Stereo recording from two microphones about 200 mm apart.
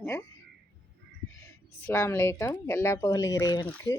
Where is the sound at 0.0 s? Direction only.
10° left (ahead or behind).